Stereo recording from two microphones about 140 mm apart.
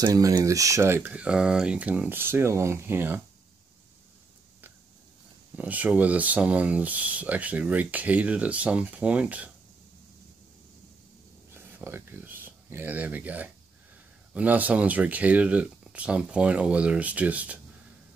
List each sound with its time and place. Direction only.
0.0 s speech: 25° right (ahead or behind)
5.6 s speech: 10° right (ahead or behind)
11.5 s a sound: 15° right (ahead or behind)
14.3 s speech: 10° right (ahead or behind)